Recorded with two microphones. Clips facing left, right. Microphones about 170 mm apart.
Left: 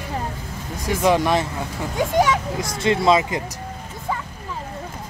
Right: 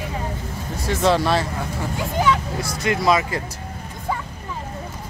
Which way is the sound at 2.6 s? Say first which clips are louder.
Left 2 dB; 25° left (ahead or behind).